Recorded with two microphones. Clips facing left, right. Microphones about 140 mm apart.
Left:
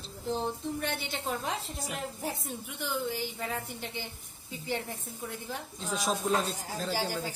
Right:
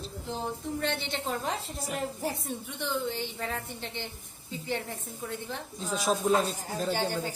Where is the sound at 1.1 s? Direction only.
Centre (ahead or behind).